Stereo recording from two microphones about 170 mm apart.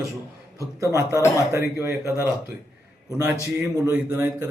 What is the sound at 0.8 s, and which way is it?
A man's voice, 15° right (ahead or behind).